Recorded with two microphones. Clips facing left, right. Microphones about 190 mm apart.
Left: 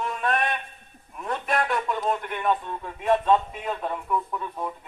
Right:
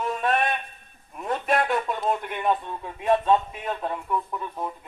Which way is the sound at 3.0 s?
5° right (ahead or behind).